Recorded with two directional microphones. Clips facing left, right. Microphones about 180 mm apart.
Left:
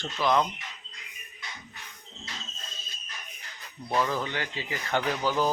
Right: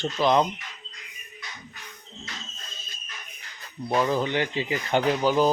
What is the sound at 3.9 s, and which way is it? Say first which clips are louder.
Speech: right 5 dB; 20° right (ahead or behind).